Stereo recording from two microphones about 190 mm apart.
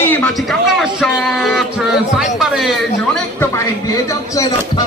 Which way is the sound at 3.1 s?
15° left (ahead or behind).